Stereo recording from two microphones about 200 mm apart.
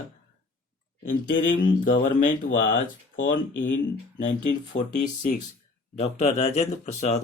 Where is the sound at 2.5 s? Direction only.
70° left (ahead or behind).